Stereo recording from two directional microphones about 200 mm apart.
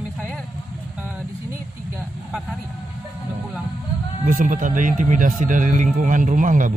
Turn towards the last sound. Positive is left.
turn(degrees=-40)  # may be behind; listen again after turning